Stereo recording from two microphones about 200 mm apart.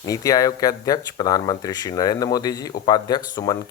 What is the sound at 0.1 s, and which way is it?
Speech, 15° left (ahead or behind).